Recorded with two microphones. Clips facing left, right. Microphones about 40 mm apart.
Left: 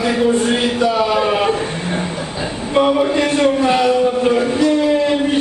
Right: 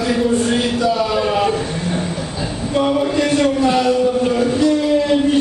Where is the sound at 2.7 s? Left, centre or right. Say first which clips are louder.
Left 3 dB; left.